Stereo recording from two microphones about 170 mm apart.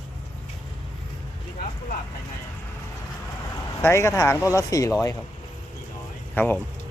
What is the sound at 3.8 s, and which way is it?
Speech, 15° left (ahead or behind).